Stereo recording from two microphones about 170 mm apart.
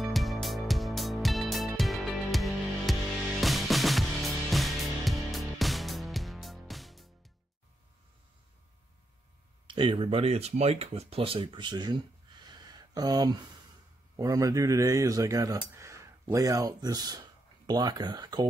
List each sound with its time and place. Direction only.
0.0 s music: centre (ahead or behind)
9.7 s speech: 30° right (ahead or behind)
12.4 s a sound: 25° right (ahead or behind)
14.1 s speech: 20° right (ahead or behind)